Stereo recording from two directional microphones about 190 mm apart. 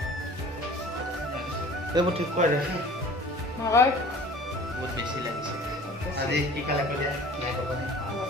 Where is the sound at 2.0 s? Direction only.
20° right (ahead or behind).